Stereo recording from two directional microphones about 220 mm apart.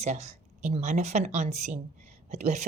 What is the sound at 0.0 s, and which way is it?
A woman's voice, 30° right (ahead or behind).